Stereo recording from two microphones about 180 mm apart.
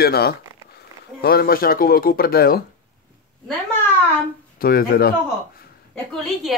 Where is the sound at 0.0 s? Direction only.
60° left (ahead or behind).